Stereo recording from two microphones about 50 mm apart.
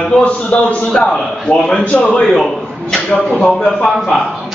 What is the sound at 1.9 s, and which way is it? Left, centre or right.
Speech, left.